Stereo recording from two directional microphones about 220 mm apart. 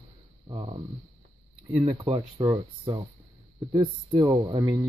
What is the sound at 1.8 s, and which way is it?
Speech, 25° right (ahead or behind).